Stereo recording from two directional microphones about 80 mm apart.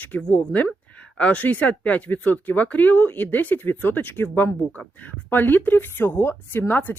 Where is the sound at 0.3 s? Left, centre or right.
Centre.